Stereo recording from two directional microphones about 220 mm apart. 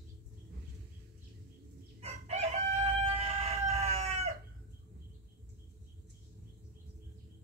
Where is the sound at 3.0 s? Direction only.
25° right (ahead or behind).